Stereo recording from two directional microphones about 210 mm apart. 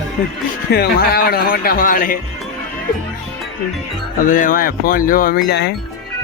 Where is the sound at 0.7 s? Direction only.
50° left (ahead or behind).